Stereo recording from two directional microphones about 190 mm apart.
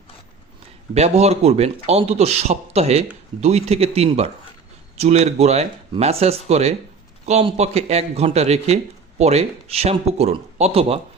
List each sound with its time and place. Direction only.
0.9 s a man's voice: 35° right (ahead or behind)